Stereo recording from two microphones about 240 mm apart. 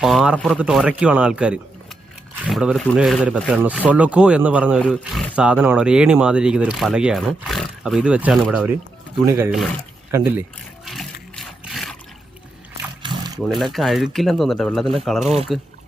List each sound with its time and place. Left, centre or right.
0.0 s speech: centre
10.8 s water: centre
13.0 s a sound: centre
13.5 s speech: centre